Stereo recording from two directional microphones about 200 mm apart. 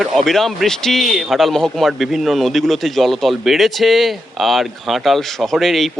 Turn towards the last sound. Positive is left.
turn(degrees=0)  # may be behind; listen again after turning